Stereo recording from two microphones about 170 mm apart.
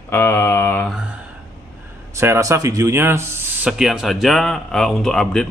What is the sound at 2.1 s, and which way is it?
Speech, 15° right (ahead or behind).